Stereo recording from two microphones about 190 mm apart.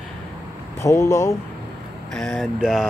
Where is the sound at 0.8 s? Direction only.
15° left (ahead or behind).